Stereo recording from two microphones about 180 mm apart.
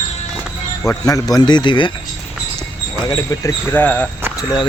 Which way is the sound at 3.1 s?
20° left (ahead or behind).